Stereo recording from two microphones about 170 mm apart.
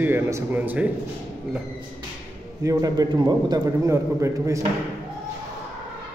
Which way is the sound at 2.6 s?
20° right (ahead or behind).